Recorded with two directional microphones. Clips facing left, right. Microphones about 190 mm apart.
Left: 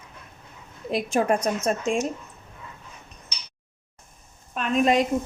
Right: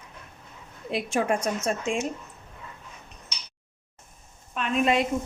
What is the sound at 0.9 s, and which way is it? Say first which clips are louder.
A woman's voice: left 3 dB; 40° left (ahead or behind).